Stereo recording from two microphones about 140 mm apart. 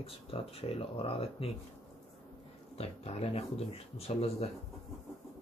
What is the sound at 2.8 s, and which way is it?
Speech, 45° left (ahead or behind).